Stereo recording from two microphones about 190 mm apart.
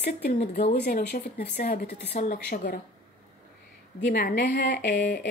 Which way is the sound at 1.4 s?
55° left (ahead or behind).